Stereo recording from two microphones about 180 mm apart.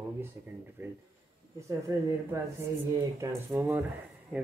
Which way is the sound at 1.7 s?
15° right (ahead or behind).